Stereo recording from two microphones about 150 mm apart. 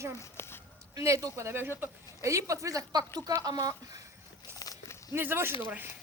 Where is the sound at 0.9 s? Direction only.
20° right (ahead or behind).